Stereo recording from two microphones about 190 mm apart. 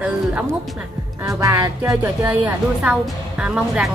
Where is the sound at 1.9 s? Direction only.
5° right (ahead or behind).